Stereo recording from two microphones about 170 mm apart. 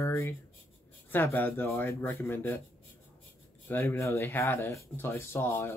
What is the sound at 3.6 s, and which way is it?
Speech, 10° left (ahead or behind).